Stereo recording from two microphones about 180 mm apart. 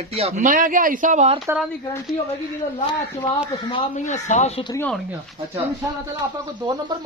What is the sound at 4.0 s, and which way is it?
Speech, 40° left (ahead or behind).